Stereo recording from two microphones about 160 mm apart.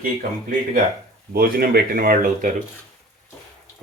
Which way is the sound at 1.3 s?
70° right (ahead or behind).